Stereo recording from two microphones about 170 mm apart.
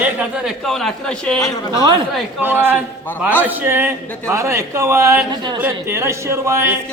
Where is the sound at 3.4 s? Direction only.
10° right (ahead or behind); by 5.6 s 25° right (ahead or behind).